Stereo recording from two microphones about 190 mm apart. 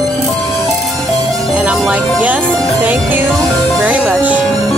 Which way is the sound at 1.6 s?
5° right (ahead or behind).